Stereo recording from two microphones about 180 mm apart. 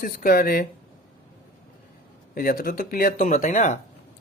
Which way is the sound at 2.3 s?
55° left (ahead or behind).